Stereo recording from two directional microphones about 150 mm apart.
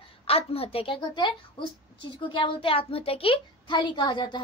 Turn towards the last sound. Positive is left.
turn(degrees=30)  # may be behind; listen again after turning